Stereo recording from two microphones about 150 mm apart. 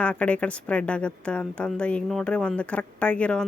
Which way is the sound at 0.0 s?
10° left (ahead or behind).